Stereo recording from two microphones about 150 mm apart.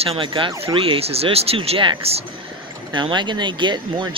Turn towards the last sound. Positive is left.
turn(degrees=-30)  # may be behind; listen again after turning